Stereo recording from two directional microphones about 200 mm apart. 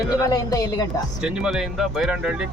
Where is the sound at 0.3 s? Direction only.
20° left (ahead or behind).